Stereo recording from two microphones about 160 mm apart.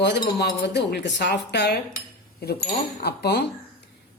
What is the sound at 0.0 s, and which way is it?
Speech, 90° left.